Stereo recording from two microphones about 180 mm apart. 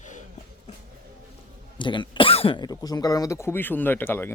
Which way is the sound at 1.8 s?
25° left (ahead or behind).